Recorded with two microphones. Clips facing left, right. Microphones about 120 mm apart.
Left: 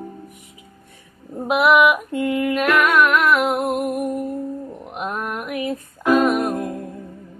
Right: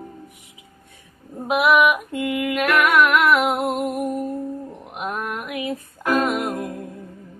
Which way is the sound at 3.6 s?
20° right (ahead or behind).